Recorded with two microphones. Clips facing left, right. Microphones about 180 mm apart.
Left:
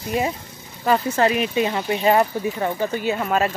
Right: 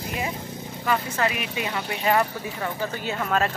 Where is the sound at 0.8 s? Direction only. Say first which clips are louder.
Left 6 dB; 35° left (ahead or behind); by 3.5 s 10° left (ahead or behind).